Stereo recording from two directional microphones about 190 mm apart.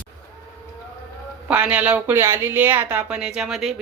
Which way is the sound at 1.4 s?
10° right (ahead or behind).